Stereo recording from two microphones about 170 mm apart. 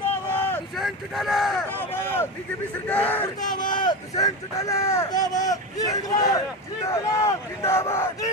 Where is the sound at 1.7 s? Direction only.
10° left (ahead or behind).